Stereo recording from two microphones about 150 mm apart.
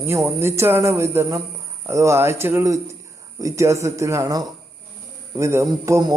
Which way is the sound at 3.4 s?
20° right (ahead or behind).